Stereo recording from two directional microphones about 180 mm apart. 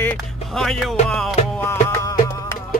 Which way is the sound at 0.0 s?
5° left (ahead or behind).